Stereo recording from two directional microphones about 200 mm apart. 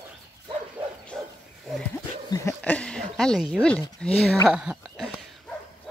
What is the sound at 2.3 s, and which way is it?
Speech, 10° left (ahead or behind).